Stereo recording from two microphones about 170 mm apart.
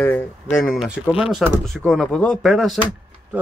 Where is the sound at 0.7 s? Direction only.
5° right (ahead or behind).